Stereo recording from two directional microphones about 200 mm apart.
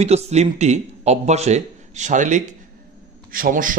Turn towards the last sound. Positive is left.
turn(degrees=-45)  # may be behind; listen again after turning